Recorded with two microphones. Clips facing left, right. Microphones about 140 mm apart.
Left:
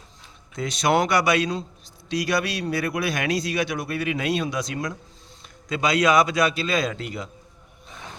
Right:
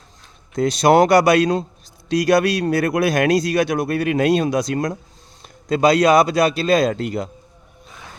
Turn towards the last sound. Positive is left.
turn(degrees=-45)  # may be behind; listen again after turning